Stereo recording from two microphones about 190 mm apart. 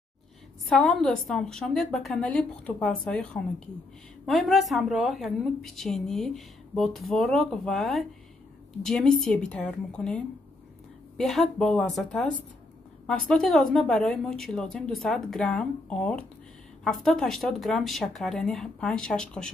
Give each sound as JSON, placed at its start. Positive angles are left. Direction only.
{"t": 0.7, "sound": "a woman's voice", "side_deg": 0}